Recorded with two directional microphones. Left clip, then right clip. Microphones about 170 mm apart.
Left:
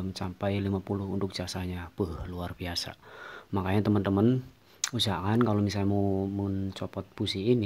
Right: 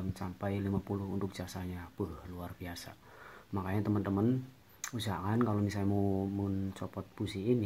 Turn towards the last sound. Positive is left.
turn(degrees=20)  # may be behind; listen again after turning